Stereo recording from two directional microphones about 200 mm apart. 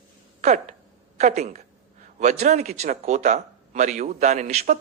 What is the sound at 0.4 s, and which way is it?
Speech, 35° right (ahead or behind).